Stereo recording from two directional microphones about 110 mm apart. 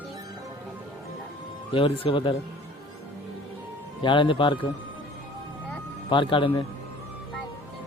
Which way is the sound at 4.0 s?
45° left (ahead or behind).